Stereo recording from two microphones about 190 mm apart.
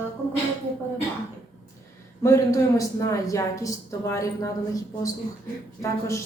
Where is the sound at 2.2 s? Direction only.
15° left (ahead or behind).